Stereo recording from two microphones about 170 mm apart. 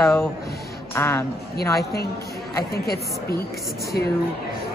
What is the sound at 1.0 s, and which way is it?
Speech, 15° left (ahead or behind).